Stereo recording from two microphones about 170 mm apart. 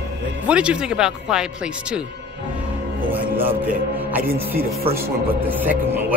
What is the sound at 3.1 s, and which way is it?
Speech, 10° right (ahead or behind).